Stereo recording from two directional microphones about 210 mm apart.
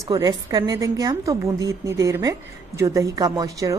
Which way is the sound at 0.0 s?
20° right (ahead or behind).